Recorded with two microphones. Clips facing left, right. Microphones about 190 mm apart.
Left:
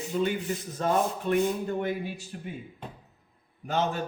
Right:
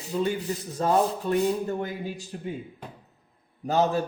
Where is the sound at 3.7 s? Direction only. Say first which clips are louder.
Right 5 dB; 40° right (ahead or behind).